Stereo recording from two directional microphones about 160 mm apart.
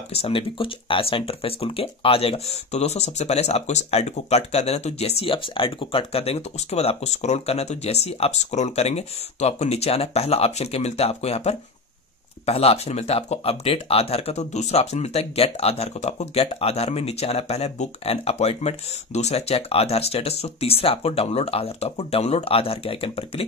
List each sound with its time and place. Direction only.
0.1 s speech: 35° left (ahead or behind)